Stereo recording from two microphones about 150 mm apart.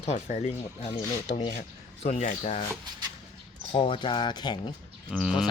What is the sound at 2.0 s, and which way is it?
Speech, 55° left (ahead or behind).